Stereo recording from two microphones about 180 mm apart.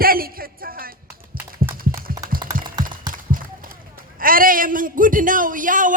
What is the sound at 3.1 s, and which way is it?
Run, 50° right (ahead or behind).